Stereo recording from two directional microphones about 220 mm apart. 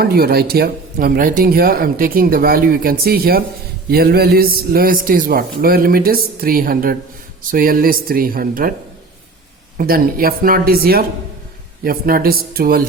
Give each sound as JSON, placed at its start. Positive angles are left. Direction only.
{"t": 0.0, "sound": "speech", "side_deg": -45}
{"t": 9.7, "sound": "speech", "side_deg": -40}